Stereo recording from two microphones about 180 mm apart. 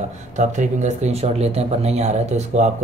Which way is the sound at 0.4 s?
40° right (ahead or behind).